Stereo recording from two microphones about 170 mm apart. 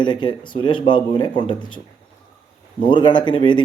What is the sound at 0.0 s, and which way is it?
A man's voice, 25° left (ahead or behind).